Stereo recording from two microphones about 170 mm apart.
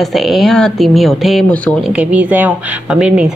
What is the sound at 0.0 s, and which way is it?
Speech, centre (ahead or behind).